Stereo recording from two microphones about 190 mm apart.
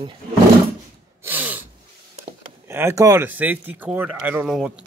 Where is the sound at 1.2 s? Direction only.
10° right (ahead or behind).